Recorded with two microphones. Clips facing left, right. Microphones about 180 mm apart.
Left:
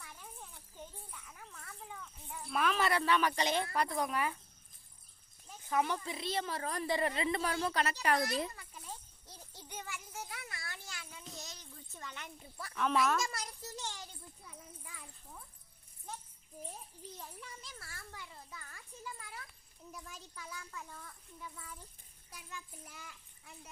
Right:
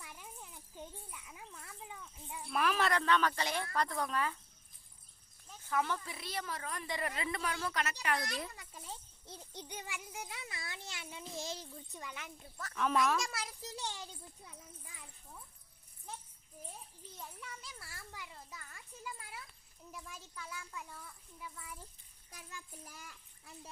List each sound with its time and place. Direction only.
1.3 s a sound: 10° right (ahead or behind)
2.5 s speech: centre (ahead or behind)
5.5 s a woman's voice: 15° left (ahead or behind); by 8.3 s 35° left (ahead or behind)
9.2 s a sound: 20° right (ahead or behind)
11.3 s a child's voice: 30° right (ahead or behind)
11.9 s speech: 15° right (ahead or behind)
12.5 s a child's voice: 10° left (ahead or behind); by 13.9 s 15° right (ahead or behind)
17.9 s speech: 10° right (ahead or behind)
19.9 s a child's voice: 5° right (ahead or behind)
22.3 s a child's voice: 40° right (ahead or behind)